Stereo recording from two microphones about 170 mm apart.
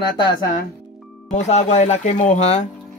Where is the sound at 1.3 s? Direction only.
40° left (ahead or behind).